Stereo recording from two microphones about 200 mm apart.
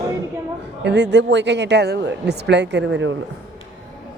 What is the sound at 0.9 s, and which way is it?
Speech, 60° right (ahead or behind).